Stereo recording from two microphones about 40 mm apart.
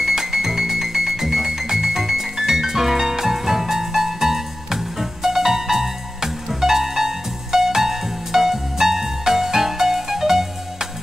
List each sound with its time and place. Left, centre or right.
0.0 s music: centre